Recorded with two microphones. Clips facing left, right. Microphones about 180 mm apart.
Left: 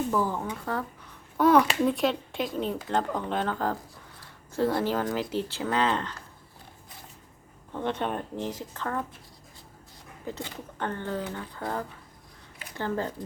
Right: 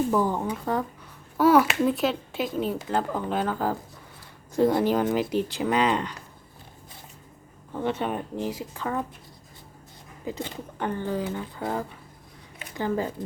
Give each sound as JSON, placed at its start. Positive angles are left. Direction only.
{"t": 0.1, "sound": "speech", "side_deg": -20}
{"t": 1.4, "sound": "a child's voice", "side_deg": -5}
{"t": 7.7, "sound": "speech", "side_deg": -10}
{"t": 10.2, "sound": "speech", "side_deg": -10}